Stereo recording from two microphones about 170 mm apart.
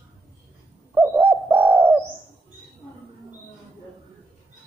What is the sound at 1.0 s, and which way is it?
Bird, 10° right (ahead or behind).